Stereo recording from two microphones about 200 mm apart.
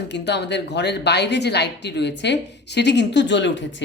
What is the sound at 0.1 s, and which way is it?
Speech, 60° left (ahead or behind).